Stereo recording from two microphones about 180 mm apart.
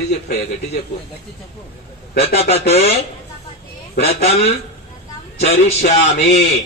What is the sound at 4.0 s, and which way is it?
Speech, 35° left (ahead or behind).